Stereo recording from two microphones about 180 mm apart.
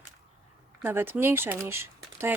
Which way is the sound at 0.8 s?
10° right (ahead or behind).